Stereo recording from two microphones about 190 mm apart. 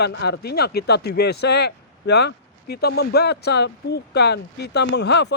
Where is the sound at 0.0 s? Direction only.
60° left (ahead or behind).